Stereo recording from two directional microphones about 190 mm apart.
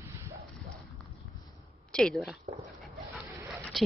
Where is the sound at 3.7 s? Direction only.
Centre (ahead or behind).